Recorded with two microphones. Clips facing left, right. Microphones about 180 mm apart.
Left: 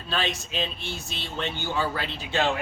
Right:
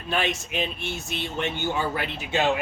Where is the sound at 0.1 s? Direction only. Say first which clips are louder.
Right 3 dB; 20° right (ahead or behind).